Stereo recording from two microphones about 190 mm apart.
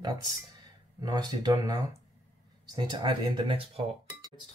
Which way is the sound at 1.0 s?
20° right (ahead or behind).